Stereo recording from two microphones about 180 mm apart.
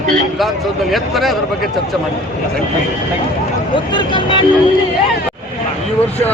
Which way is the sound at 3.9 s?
25° left (ahead or behind).